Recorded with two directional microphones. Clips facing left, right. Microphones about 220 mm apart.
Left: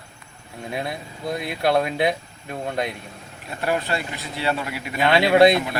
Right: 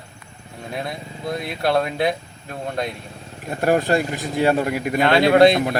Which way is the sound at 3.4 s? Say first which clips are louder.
Right 6 dB; 45° right (ahead or behind).